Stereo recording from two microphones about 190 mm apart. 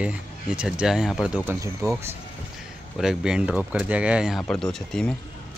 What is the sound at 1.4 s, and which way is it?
Speech, 15° right (ahead or behind).